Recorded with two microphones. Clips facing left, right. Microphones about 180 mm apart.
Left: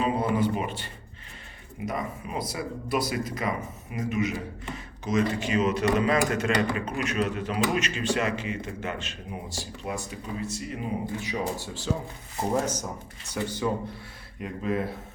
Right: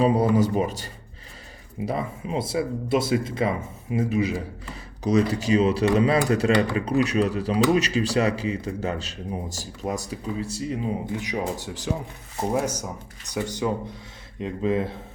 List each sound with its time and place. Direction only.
0.0 s speech: 40° right (ahead or behind)
11.1 s speech: 15° right (ahead or behind)